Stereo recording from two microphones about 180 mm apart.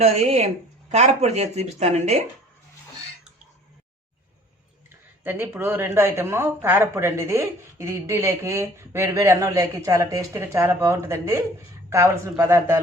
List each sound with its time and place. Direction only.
0.0 s speech: 35° right (ahead or behind)
5.2 s a woman's voice: 10° right (ahead or behind)